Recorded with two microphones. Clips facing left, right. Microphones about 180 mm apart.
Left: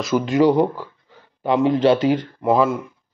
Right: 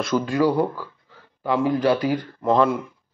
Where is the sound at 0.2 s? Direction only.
20° left (ahead or behind).